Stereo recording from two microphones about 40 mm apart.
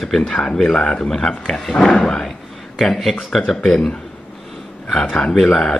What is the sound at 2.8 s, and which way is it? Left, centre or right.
Speech, centre.